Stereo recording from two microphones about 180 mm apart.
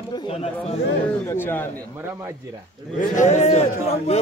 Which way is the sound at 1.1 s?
10° left (ahead or behind).